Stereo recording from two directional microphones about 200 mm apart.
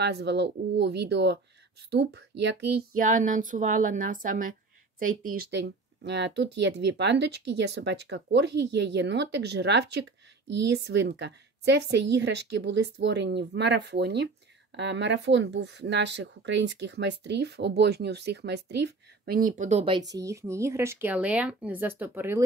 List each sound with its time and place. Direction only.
0.0 s speech: 55° right (ahead or behind)
3.1 s speech: 40° right (ahead or behind)
5.3 s speech: 55° right (ahead or behind); by 20.0 s 30° right (ahead or behind)
20.2 s a woman's voice: 15° right (ahead or behind)